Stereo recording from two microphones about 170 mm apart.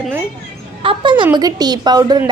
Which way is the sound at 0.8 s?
30° right (ahead or behind).